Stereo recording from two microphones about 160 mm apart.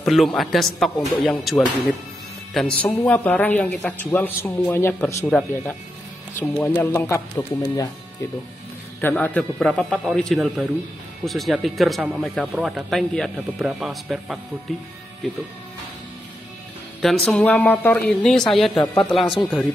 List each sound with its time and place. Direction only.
0.0 s a man's voice: centre (ahead or behind)
1.4 s a man's voice: centre (ahead or behind)
5.0 s speech: 5° left (ahead or behind); by 7.9 s 25° left (ahead or behind)
9.0 s speech: 10° left (ahead or behind)
17.0 s speech: centre (ahead or behind)